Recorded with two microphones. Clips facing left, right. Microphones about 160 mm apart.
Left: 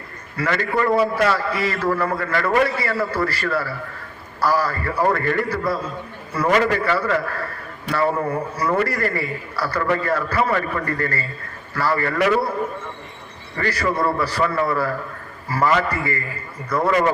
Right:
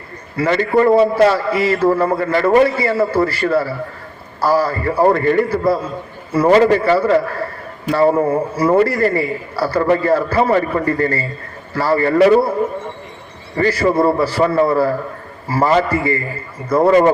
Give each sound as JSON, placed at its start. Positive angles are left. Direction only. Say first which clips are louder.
{"t": 0.3, "sound": "a man's voice", "louder": "right 7 dB", "side_deg": -25}
{"t": 13.6, "sound": "a man's voice", "louder": "right 7 dB", "side_deg": -25}